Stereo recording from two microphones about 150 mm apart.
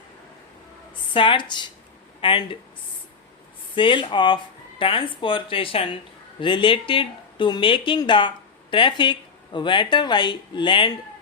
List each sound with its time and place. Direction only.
1.1 s speech: 35° left (ahead or behind)
3.8 s speech: 35° left (ahead or behind)